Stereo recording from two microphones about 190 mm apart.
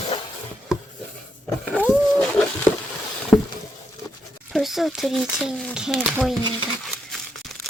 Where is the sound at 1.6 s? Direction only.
5° left (ahead or behind).